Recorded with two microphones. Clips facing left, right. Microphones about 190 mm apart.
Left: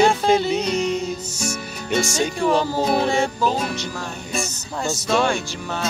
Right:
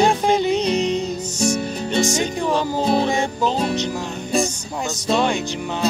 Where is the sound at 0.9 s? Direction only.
10° left (ahead or behind).